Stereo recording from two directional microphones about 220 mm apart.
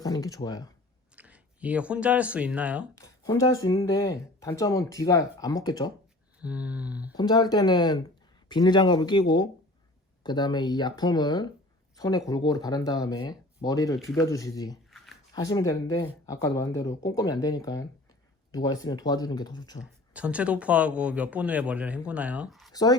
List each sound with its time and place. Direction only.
0.0 s speech: 15° left (ahead or behind)
1.1 s speech: 5° right (ahead or behind)
2.9 s speech: 15° left (ahead or behind)
6.4 s a sound: 5° right (ahead or behind)
7.2 s speech: 20° left (ahead or behind)
14.8 s a sound: centre (ahead or behind)
15.3 s speech: 15° left (ahead or behind)
19.8 s speech: 5° right (ahead or behind)
22.7 s speech: 15° left (ahead or behind)